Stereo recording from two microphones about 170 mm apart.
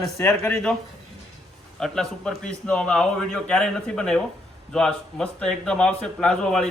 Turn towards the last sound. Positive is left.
turn(degrees=5)  # may be behind; listen again after turning